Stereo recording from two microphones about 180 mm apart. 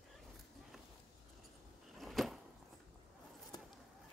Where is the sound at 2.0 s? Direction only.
Centre (ahead or behind).